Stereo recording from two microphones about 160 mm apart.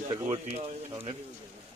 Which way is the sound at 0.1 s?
40° right (ahead or behind).